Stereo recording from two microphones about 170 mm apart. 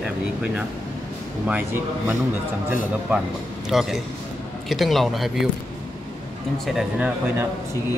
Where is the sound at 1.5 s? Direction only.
15° right (ahead or behind).